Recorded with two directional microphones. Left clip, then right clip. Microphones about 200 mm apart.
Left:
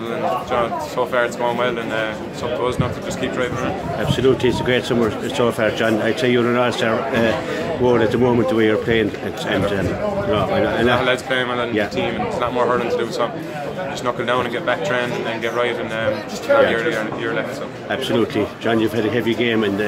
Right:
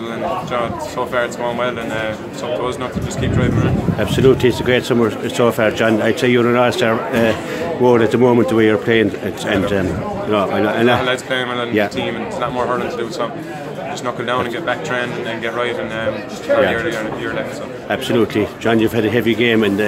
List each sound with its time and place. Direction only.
0.5 s a man's voice: 5° right (ahead or behind)
4.0 s speech: 25° right (ahead or behind)
10.3 s speech: 30° right (ahead or behind)
11.0 s a man's voice: 5° right (ahead or behind)
18.0 s speech: 25° right (ahead or behind)